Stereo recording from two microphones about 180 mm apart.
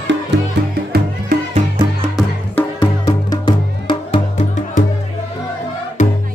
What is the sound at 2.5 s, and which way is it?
Music, 20° left (ahead or behind).